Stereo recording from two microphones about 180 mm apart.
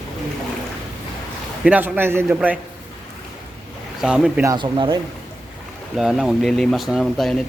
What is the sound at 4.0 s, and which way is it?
Speech, centre (ahead or behind).